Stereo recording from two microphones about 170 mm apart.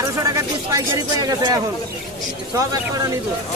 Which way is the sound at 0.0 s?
20° right (ahead or behind).